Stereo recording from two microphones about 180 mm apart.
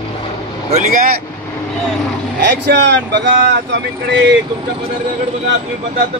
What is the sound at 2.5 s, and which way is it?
A man's voice, 70° right (ahead or behind).